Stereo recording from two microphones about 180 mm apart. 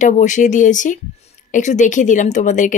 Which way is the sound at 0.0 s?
45° left (ahead or behind).